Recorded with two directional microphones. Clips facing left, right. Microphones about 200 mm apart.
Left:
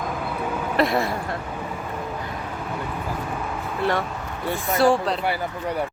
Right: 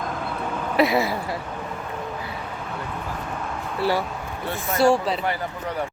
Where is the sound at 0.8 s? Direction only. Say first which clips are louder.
Right 2 dB; 5° right (ahead or behind).